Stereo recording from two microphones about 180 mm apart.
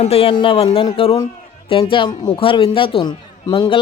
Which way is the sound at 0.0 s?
35° left (ahead or behind).